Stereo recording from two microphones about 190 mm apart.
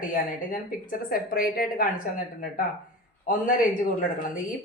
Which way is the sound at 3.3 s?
45° left (ahead or behind).